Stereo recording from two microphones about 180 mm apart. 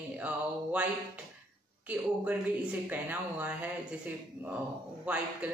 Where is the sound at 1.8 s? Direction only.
5° right (ahead or behind).